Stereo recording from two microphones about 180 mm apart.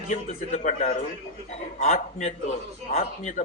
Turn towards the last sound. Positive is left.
turn(degrees=40)  # may be behind; listen again after turning